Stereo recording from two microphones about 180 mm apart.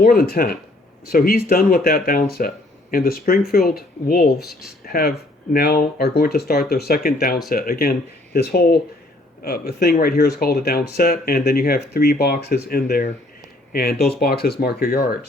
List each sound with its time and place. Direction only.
0.0 s speech: 55° left (ahead or behind)
4.4 s speech: centre (ahead or behind)
4.9 s speech: 55° left (ahead or behind)